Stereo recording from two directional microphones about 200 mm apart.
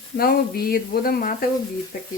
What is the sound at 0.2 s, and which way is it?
Speech, 50° left (ahead or behind).